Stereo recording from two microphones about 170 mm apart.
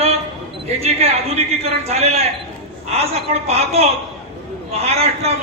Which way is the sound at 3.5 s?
40° right (ahead or behind).